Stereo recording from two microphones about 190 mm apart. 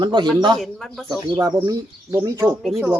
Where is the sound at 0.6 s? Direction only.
Centre (ahead or behind).